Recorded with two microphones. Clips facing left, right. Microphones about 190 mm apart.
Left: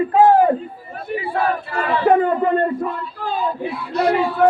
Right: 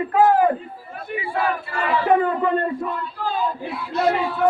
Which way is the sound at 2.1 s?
45° left (ahead or behind).